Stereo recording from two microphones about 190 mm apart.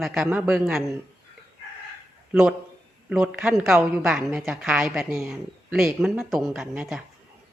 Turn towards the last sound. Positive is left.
turn(degrees=-5)  # may be behind; listen again after turning